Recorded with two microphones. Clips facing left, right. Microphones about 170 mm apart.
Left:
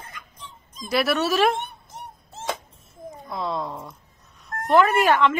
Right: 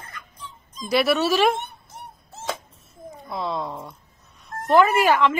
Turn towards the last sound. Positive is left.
turn(degrees=0)  # may be behind; listen again after turning